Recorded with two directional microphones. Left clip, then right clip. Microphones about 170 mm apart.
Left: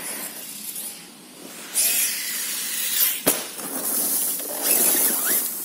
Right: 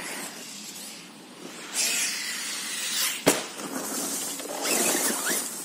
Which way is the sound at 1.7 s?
10° left (ahead or behind).